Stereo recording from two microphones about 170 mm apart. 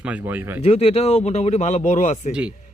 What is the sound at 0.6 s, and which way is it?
Speech, 35° left (ahead or behind).